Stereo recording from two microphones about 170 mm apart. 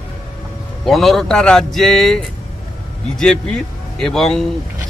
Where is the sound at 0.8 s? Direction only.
Centre (ahead or behind).